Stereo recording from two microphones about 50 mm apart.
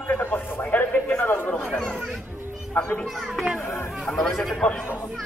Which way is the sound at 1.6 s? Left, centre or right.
Centre.